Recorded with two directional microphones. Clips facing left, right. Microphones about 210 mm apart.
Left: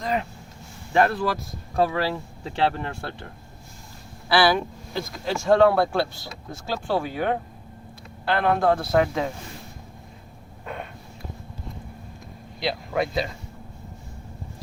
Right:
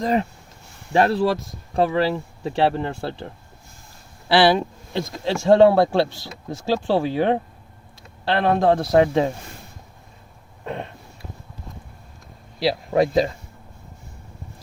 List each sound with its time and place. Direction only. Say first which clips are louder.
0.0 s speech: right 6 dB; 35° right (ahead or behind)
4.3 s speech: right 4 dB; 25° right (ahead or behind)
12.5 s speech: right 6 dB; 35° right (ahead or behind)